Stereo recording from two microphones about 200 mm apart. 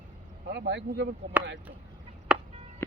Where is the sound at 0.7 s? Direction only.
60° right (ahead or behind).